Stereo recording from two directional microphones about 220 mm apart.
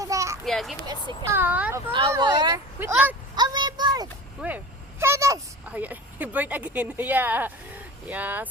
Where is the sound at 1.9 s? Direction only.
20° right (ahead or behind).